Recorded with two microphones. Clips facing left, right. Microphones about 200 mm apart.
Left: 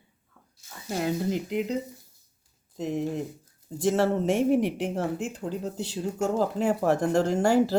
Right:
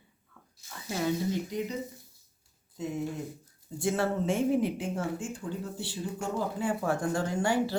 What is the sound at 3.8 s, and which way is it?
Speech, 75° left (ahead or behind).